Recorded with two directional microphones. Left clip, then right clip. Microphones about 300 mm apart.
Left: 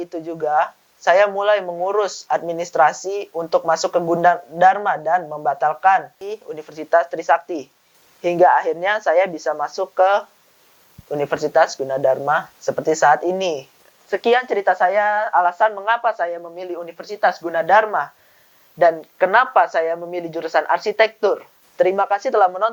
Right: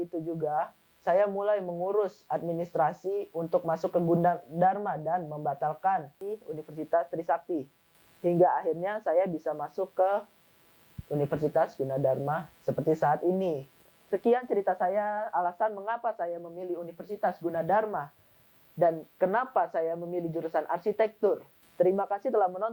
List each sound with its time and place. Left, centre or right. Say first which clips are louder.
0.0 s speech: left 8 dB; centre